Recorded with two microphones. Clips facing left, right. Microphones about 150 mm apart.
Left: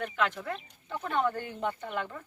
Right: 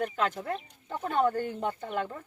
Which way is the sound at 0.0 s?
40° right (ahead or behind).